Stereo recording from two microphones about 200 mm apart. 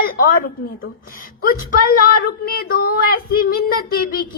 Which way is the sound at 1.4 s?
45° left (ahead or behind).